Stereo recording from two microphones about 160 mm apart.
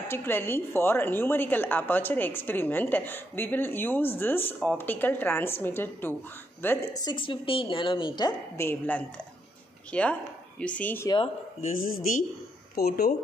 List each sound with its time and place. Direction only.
0.1 s a woman's voice: 15° left (ahead or behind)
11.6 s speech: 55° left (ahead or behind)
12.7 s speech: 75° left (ahead or behind)